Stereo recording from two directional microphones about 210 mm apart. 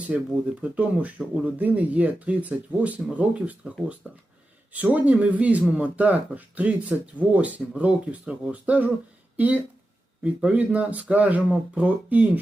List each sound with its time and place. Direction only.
0.1 s speech: 5° right (ahead or behind)